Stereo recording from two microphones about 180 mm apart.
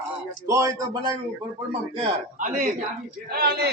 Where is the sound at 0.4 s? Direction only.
15° right (ahead or behind).